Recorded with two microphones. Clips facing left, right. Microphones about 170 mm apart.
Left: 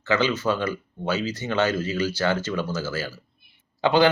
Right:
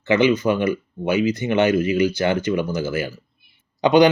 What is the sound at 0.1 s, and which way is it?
Speech, 15° right (ahead or behind).